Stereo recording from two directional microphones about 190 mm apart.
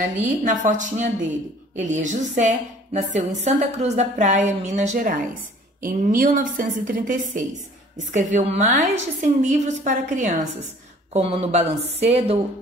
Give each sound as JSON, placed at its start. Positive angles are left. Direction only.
{"t": 0.2, "sound": "a woman's voice", "side_deg": -40}